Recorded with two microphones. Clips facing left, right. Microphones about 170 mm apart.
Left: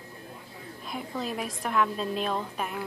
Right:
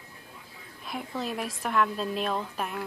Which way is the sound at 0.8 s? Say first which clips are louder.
Even; centre (ahead or behind).